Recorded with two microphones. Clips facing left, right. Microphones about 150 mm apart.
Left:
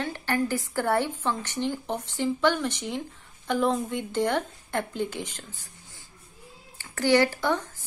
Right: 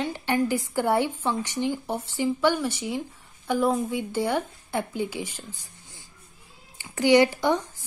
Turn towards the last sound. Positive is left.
turn(degrees=-15)  # may be behind; listen again after turning